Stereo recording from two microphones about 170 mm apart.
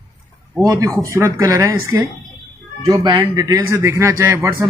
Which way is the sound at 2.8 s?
25° right (ahead or behind).